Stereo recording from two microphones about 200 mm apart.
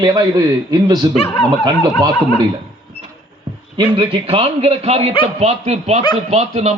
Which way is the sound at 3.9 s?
25° right (ahead or behind).